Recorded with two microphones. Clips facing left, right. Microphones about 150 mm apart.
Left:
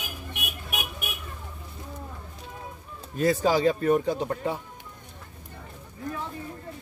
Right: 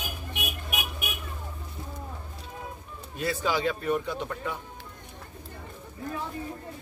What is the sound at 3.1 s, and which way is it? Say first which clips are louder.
A man's voice: left 6 dB; 40° left (ahead or behind).